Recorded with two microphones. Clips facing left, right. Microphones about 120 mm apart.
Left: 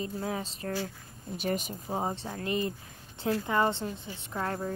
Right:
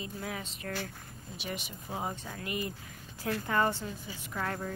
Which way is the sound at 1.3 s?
45° left (ahead or behind).